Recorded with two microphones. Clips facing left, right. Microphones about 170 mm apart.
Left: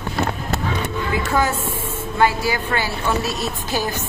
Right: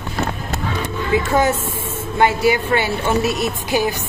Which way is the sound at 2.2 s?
20° right (ahead or behind).